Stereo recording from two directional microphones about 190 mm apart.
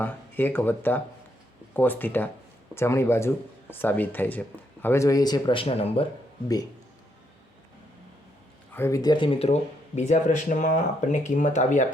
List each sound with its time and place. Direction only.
0.0 s speech: 10° left (ahead or behind); by 6.1 s 30° left (ahead or behind)
8.7 s speech: 15° left (ahead or behind); by 11.9 s 40° left (ahead or behind)